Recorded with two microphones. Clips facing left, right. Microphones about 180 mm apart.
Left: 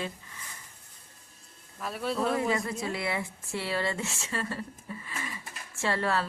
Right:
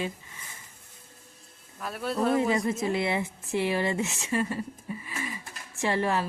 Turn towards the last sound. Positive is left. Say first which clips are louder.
# right 2 dB
turn(degrees=-15)  # may be behind; listen again after turning